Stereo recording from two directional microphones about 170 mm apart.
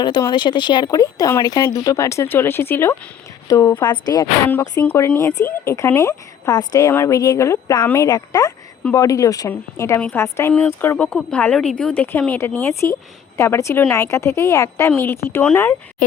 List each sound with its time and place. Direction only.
0.0 s a woman's voice: 25° left (ahead or behind)
4.4 s a woman's voice: 10° left (ahead or behind)